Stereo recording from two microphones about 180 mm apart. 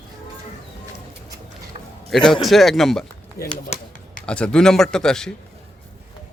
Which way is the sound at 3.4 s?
15° left (ahead or behind).